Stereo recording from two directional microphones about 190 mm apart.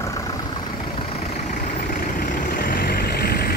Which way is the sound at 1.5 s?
50° left (ahead or behind).